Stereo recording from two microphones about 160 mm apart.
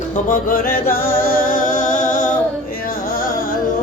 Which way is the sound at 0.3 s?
60° left (ahead or behind).